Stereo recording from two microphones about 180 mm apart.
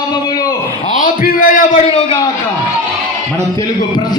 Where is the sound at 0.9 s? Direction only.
50° left (ahead or behind).